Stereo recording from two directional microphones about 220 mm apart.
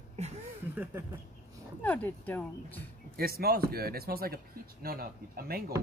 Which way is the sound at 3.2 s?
45° right (ahead or behind).